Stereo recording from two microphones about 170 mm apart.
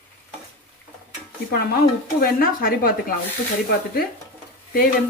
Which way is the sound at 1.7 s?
60° left (ahead or behind).